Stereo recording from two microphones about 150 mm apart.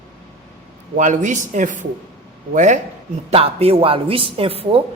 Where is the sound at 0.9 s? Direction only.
55° right (ahead or behind).